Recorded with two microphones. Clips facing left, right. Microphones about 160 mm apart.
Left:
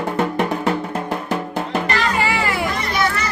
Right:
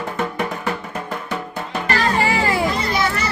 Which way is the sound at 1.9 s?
40° right (ahead or behind).